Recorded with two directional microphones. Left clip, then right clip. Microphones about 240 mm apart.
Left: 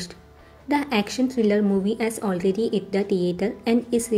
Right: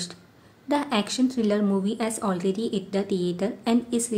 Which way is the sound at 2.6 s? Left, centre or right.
Right.